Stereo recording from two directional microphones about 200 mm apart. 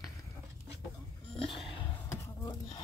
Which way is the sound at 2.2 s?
20° left (ahead or behind).